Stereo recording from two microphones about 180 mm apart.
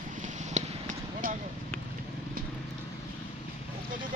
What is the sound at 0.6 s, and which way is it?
Basketball bounce, 40° right (ahead or behind).